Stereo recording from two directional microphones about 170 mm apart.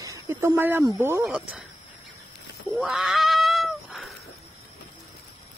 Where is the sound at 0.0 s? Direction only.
15° right (ahead or behind).